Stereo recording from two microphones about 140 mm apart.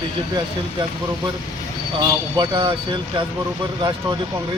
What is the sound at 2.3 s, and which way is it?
Speech, 35° right (ahead or behind).